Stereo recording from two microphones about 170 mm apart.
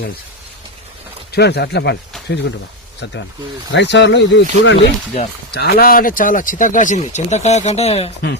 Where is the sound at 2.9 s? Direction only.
90° left.